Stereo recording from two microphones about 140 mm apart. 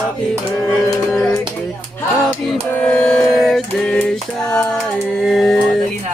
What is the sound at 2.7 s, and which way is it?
Music, 5° left (ahead or behind).